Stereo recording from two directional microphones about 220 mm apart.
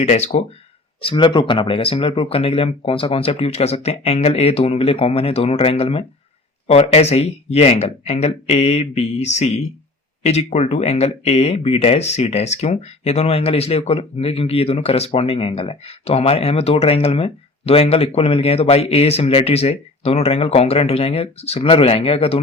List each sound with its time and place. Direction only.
0.0 s speech: 30° left (ahead or behind)